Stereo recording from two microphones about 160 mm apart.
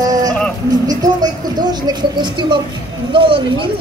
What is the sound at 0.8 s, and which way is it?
Speech, 25° right (ahead or behind).